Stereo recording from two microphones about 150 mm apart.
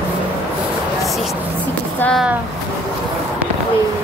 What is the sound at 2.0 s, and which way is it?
Speech, 5° left (ahead or behind).